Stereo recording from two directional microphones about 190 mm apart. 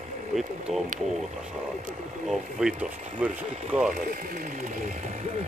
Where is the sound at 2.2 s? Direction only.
Centre (ahead or behind).